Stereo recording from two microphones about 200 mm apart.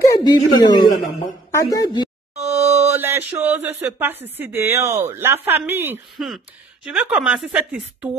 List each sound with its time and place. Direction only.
0.0 s speech: 20° left (ahead or behind)
2.4 s a sound: 15° right (ahead or behind)
3.0 s mantra: 10° right (ahead or behind)
4.0 s a woman's voice: 10° right (ahead or behind)
6.1 s a woman's voice: centre (ahead or behind)